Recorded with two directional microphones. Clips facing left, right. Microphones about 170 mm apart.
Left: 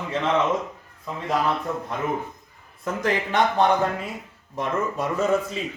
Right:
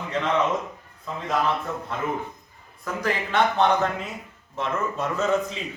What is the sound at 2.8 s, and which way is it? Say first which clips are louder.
Speech: left 3 dB; 20° left (ahead or behind).